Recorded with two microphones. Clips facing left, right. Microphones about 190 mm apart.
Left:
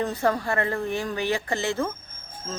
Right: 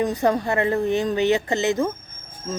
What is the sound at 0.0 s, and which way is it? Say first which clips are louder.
A woman's voice: right 4 dB; 15° right (ahead or behind).